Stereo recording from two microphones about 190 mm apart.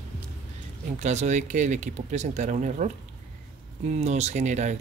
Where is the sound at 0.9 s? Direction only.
35° right (ahead or behind).